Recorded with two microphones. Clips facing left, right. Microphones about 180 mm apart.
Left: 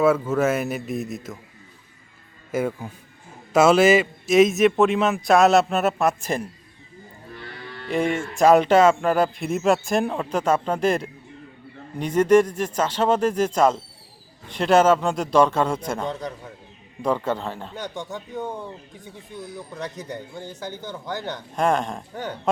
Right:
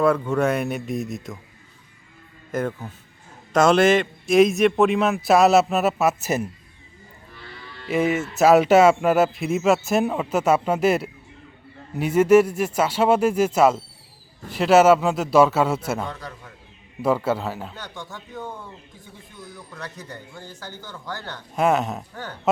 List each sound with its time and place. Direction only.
0.0 s a man's voice: 5° left (ahead or behind)
2.5 s a man's voice: 10° left (ahead or behind)
7.9 s a man's voice: 5° right (ahead or behind)
17.7 s speech: 20° left (ahead or behind)
19.7 s speech: 20° left (ahead or behind)
21.5 s a man's voice: 5° right (ahead or behind)
22.1 s speech: 20° left (ahead or behind)